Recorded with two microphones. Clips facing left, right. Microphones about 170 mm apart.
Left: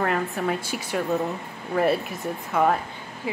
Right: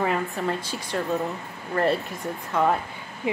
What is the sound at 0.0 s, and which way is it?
A woman's voice, centre (ahead or behind).